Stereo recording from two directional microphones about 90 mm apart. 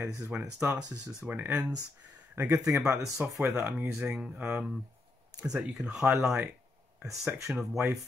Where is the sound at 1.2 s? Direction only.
20° right (ahead or behind).